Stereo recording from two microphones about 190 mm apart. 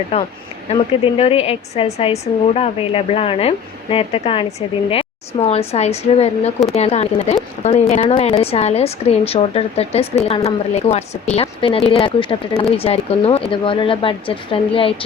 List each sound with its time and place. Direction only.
0.1 s a woman's voice: 30° left (ahead or behind)